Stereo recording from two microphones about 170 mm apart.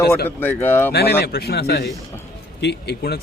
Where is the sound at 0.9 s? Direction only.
65° left (ahead or behind).